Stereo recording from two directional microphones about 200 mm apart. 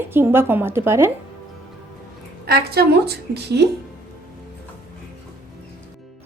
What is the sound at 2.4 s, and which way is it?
A woman's voice, 50° right (ahead or behind).